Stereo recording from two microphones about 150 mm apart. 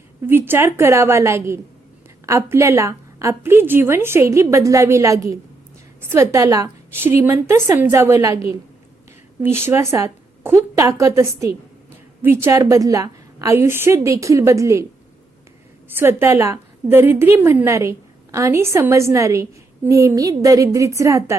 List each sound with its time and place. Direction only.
0.3 s a woman's voice: 15° right (ahead or behind)
15.9 s a woman's voice: 15° right (ahead or behind)